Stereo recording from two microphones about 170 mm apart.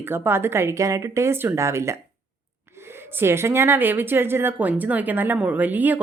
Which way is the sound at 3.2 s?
15° right (ahead or behind).